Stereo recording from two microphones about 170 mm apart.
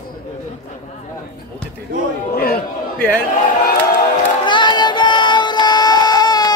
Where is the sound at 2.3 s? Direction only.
60° left (ahead or behind).